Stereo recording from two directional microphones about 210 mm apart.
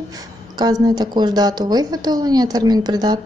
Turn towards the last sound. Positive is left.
turn(degrees=-20)  # may be behind; listen again after turning